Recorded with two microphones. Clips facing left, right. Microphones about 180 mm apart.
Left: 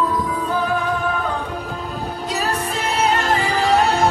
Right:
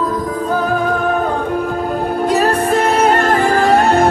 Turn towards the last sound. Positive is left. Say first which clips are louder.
# right 5 dB
turn(degrees=-50)  # may be behind; listen again after turning